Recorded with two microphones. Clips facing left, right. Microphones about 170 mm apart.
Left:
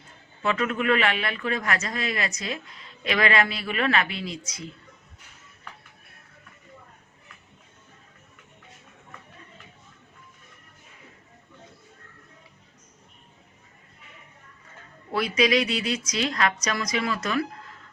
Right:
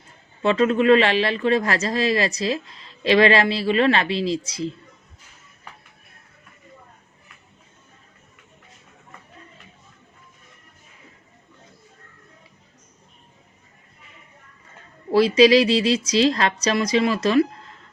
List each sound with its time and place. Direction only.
0.4 s speech: 30° right (ahead or behind)
15.1 s speech: 30° right (ahead or behind)